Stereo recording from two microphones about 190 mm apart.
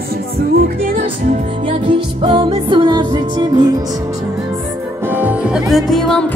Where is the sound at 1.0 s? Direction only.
30° right (ahead or behind).